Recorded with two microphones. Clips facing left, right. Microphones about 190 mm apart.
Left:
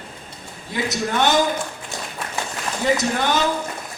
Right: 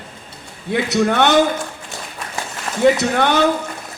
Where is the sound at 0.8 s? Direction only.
65° right (ahead or behind).